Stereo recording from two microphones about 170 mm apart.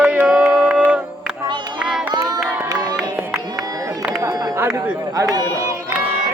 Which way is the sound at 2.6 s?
20° right (ahead or behind).